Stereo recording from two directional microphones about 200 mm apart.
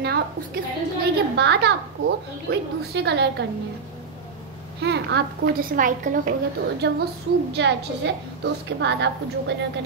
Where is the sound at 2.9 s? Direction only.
60° right (ahead or behind).